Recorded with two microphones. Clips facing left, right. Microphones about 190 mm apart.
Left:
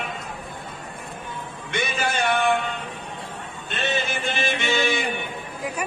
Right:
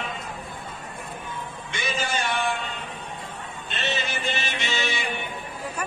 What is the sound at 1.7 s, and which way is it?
Music, 60° left (ahead or behind).